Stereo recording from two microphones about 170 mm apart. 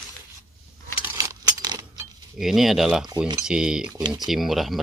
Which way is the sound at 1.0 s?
20° right (ahead or behind).